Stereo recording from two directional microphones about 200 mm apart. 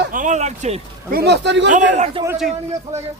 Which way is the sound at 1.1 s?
55° right (ahead or behind).